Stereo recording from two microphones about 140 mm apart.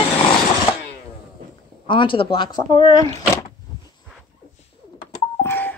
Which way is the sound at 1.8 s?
35° left (ahead or behind).